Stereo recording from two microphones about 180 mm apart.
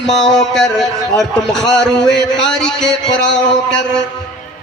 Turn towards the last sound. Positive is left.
turn(degrees=80)